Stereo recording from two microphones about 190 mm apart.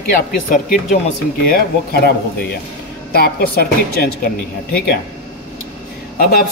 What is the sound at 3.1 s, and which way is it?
Speech, 55° left (ahead or behind).